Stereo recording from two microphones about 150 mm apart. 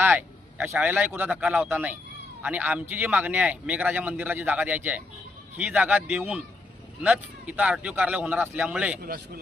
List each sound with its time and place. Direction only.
0.0 s a man's voice: 15° right (ahead or behind)
9.0 s speech: 80° right